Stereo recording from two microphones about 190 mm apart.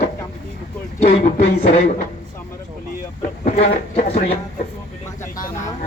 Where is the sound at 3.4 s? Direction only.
35° left (ahead or behind).